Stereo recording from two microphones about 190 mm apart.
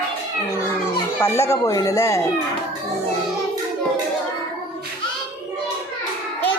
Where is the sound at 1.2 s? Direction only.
15° left (ahead or behind).